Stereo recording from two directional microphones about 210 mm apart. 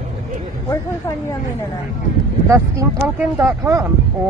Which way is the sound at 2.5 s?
15° right (ahead or behind).